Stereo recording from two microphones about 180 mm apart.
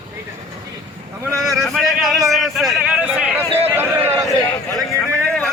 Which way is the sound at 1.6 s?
Centre (ahead or behind).